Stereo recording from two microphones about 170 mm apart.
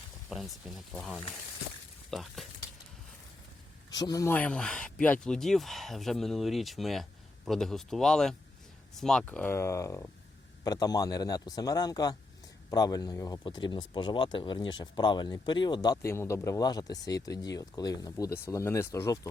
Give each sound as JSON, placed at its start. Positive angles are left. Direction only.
{"t": 0.3, "sound": "speech", "side_deg": 0}
{"t": 3.9, "sound": "speech", "side_deg": 20}
{"t": 4.4, "sound": "speech", "side_deg": 5}